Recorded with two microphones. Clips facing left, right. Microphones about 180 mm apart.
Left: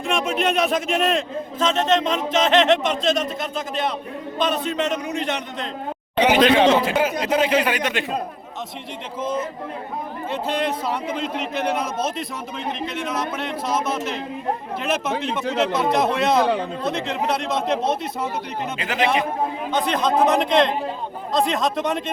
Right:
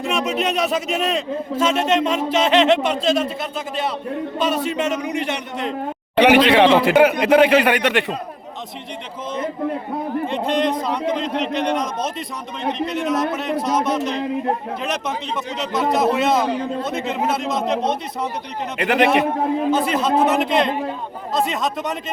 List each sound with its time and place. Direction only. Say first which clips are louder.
0.0 s a man's voice: right 1 dB; centre (ahead or behind)
4.4 s a man's voice: even; 10° right (ahead or behind)
6.1 s speech: right 3 dB; 65° right (ahead or behind)
9.2 s a man's voice: right 2 dB; 5° left (ahead or behind)
18.8 s speech: right 9 dB; 60° right (ahead or behind)
19.7 s a man's voice: right 2 dB; 5° right (ahead or behind)